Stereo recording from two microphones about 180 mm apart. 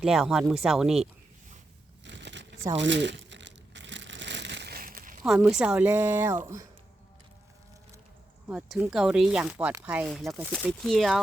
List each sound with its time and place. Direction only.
0.0 s speech: centre (ahead or behind)
2.0 s a sound: 80° right
2.7 s crumpling: 90° right; by 5.2 s 50° right (ahead or behind)
5.5 s speech: 5° right (ahead or behind)
8.4 s speech: 5° right (ahead or behind)
10.1 s speech: centre (ahead or behind)